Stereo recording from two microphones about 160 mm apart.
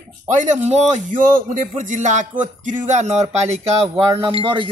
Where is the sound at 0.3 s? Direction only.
50° right (ahead or behind).